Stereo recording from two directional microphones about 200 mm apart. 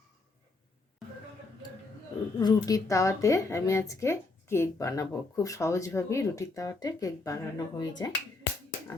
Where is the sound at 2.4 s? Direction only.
15° left (ahead or behind).